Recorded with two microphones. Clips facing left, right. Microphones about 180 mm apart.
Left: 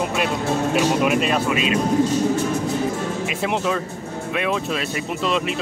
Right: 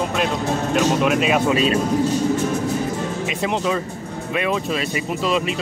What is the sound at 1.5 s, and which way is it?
Speech, 35° right (ahead or behind).